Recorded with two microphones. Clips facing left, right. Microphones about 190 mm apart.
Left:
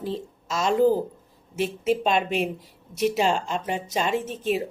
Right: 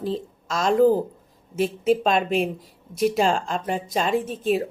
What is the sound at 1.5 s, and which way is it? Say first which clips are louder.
Speech: right 3 dB; centre (ahead or behind).